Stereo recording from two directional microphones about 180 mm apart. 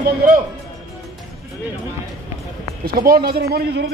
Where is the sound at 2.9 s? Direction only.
55° right (ahead or behind).